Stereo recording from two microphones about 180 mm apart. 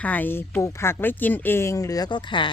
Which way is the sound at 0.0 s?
10° left (ahead or behind).